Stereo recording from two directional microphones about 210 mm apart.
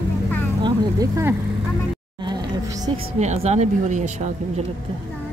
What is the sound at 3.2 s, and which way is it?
Speech, 35° right (ahead or behind).